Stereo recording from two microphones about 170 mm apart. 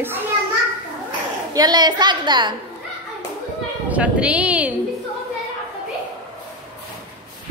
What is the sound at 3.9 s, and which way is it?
Speech, 5° right (ahead or behind).